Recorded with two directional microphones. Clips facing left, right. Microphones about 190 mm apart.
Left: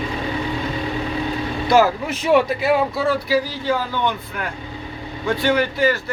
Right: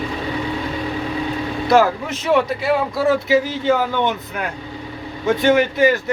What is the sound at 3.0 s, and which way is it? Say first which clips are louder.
A man's voice: right 3 dB; 20° right (ahead or behind).